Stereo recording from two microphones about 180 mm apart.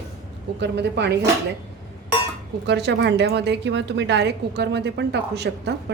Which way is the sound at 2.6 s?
70° right (ahead or behind).